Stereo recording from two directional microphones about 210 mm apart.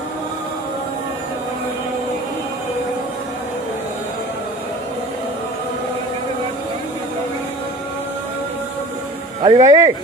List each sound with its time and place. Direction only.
9.4 s speech: 25° right (ahead or behind)